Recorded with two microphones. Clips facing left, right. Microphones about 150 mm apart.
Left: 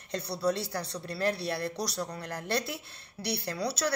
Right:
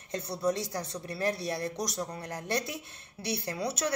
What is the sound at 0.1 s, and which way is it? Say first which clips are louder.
A woman's voice: even; 20° right (ahead or behind).